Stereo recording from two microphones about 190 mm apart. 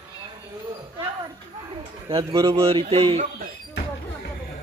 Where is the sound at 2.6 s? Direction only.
30° right (ahead or behind).